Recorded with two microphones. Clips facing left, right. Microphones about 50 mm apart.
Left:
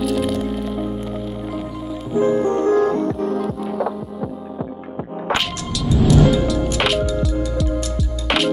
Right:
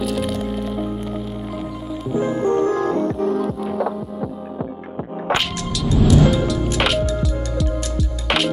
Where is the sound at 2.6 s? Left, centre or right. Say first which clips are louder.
Left 3 dB; left.